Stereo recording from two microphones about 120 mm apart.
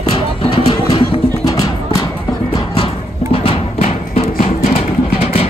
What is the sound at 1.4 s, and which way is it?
Music, 30° left (ahead or behind).